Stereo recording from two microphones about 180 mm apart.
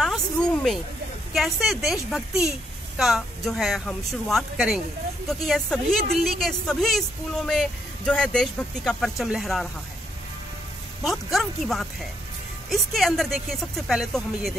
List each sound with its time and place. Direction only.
0.0 s a sound: 5° left (ahead or behind)
1.3 s speech: centre (ahead or behind)
11.3 s speech: centre (ahead or behind)